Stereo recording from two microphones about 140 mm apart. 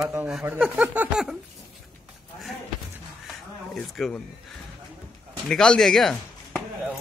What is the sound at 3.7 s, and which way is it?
Speech, 5° left (ahead or behind).